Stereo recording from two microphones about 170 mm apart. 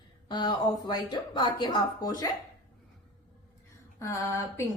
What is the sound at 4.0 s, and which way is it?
Speech, 15° left (ahead or behind).